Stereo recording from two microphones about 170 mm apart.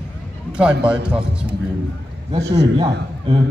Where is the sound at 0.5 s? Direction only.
5° right (ahead or behind).